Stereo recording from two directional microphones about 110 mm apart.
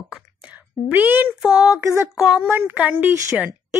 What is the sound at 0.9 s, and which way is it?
Speech, 15° right (ahead or behind).